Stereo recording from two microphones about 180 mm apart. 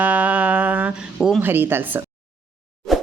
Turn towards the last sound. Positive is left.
turn(degrees=0)  # may be behind; listen again after turning